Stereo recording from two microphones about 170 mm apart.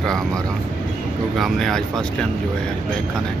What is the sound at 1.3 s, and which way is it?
Speech, centre (ahead or behind).